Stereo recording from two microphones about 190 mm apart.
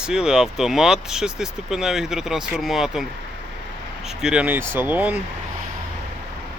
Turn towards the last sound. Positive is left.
turn(degrees=-10)  # may be behind; listen again after turning